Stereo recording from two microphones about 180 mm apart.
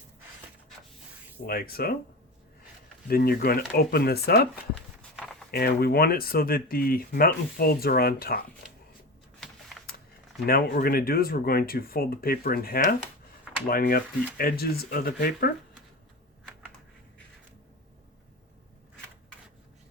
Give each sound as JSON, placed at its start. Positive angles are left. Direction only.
{"t": 1.5, "sound": "speech", "side_deg": 55}
{"t": 3.1, "sound": "speech", "side_deg": 55}
{"t": 5.1, "sound": "a sound", "side_deg": 0}
{"t": 5.5, "sound": "speech", "side_deg": 60}
{"t": 9.4, "sound": "typing", "side_deg": 0}
{"t": 10.4, "sound": "speech", "side_deg": 55}